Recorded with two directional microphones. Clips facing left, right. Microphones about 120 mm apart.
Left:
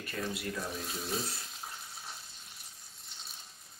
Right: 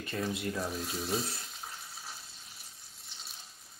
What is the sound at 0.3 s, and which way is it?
Speech, 25° right (ahead or behind).